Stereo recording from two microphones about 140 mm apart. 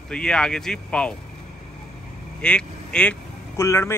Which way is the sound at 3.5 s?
20° left (ahead or behind).